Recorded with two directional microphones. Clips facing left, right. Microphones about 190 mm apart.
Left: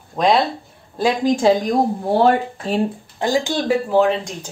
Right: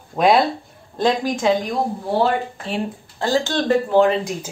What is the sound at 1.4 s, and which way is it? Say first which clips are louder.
Speech: left 3 dB; 35° left (ahead or behind).